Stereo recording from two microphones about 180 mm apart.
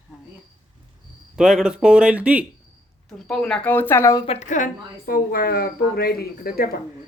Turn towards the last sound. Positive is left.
turn(degrees=55)  # may be behind; listen again after turning